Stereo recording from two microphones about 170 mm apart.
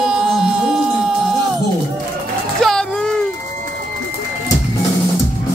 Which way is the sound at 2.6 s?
5° left (ahead or behind).